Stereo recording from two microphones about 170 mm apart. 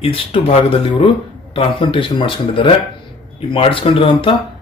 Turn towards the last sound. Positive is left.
turn(degrees=30)  # may be behind; listen again after turning